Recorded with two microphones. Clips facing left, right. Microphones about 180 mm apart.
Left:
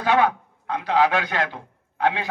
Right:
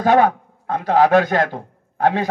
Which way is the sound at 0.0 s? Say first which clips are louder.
Right 5 dB; 45° right (ahead or behind).